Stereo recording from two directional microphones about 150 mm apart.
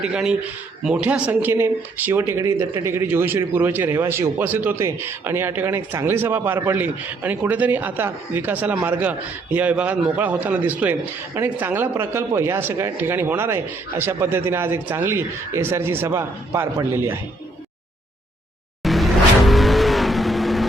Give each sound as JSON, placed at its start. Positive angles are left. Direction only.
{"t": 0.0, "sound": "speech", "side_deg": -5}
{"t": 18.8, "sound": "vehicle", "side_deg": 0}